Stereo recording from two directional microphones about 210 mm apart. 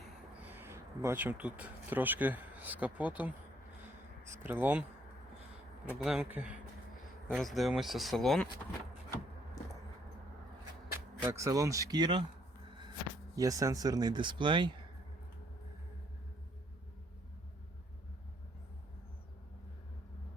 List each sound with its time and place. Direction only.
0.5 s speech: 10° right (ahead or behind)
6.0 s speech: 5° right (ahead or behind)
11.2 s speech: 15° right (ahead or behind)
13.3 s speech: 15° right (ahead or behind)